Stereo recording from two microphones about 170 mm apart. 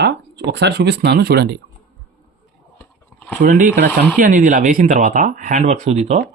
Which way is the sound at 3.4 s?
50° right (ahead or behind).